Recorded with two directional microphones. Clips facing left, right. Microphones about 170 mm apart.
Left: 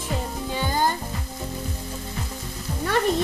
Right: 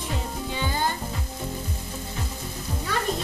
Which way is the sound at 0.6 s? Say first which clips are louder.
Left 4 dB; 40° left (ahead or behind).